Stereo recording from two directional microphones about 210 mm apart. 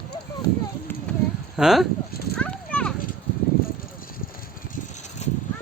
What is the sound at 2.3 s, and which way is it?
Clip-clop, 5° left (ahead or behind).